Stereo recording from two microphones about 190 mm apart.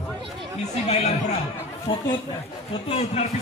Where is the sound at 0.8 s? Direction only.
35° left (ahead or behind).